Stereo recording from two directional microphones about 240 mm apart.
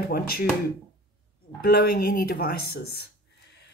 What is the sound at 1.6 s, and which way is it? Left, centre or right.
Speech, left.